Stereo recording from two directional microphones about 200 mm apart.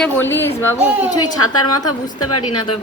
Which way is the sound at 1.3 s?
90° left.